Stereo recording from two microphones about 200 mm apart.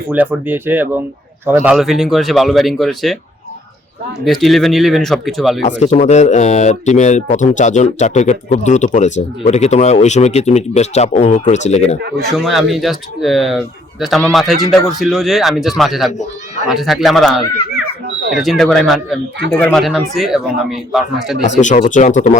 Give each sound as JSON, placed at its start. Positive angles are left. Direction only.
{"t": 0.1, "sound": "speech", "side_deg": -10}
{"t": 4.3, "sound": "speech", "side_deg": 0}
{"t": 5.8, "sound": "speech", "side_deg": 35}
{"t": 12.3, "sound": "speech", "side_deg": 0}
{"t": 21.4, "sound": "speech", "side_deg": 35}